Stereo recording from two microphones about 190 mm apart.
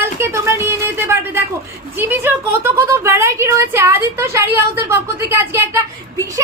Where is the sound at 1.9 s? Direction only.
10° right (ahead or behind).